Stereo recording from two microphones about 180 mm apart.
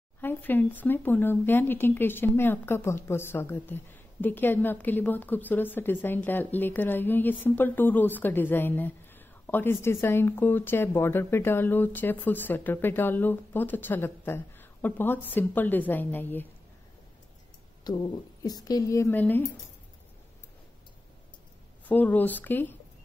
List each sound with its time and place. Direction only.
0.2 s a woman's voice: 10° left (ahead or behind)
17.9 s a woman's voice: 20° left (ahead or behind)
21.8 s a woman's voice: 10° left (ahead or behind)